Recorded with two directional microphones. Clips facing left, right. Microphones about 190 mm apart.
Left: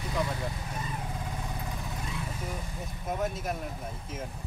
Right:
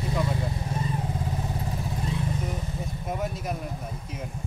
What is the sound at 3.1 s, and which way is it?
Speech, centre (ahead or behind).